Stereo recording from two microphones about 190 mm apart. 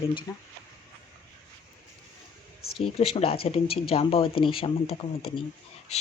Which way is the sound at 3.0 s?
30° left (ahead or behind).